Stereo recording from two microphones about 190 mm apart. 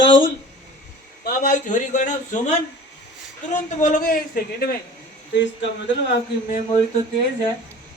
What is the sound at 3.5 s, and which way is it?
A man's voice, 40° left (ahead or behind).